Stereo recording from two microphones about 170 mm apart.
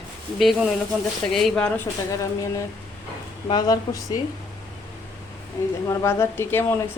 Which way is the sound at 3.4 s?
25° left (ahead or behind).